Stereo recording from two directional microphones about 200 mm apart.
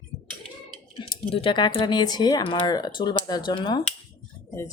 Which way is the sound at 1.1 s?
25° left (ahead or behind).